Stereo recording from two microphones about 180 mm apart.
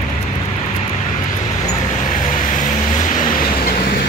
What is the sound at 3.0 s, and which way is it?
Vehicle, 45° left (ahead or behind).